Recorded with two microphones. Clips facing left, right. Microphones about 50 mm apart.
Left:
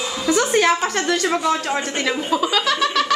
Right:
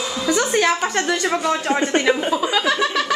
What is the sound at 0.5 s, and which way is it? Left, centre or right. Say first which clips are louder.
Speech: left 1 dB; centre.